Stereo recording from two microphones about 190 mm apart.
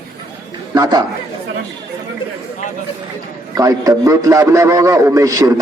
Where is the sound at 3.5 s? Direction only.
20° right (ahead or behind).